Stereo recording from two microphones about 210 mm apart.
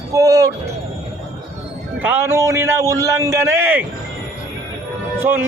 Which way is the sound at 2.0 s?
10° right (ahead or behind).